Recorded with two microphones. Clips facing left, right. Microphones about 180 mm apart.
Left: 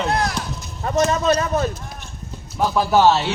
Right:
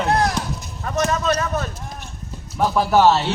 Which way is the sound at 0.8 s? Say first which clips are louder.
Left 3 dB; 25° left (ahead or behind).